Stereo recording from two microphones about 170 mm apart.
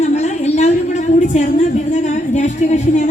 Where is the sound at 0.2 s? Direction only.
40° left (ahead or behind).